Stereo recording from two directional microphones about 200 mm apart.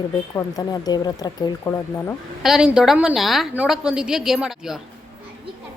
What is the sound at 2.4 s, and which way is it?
Speech, 5° right (ahead or behind).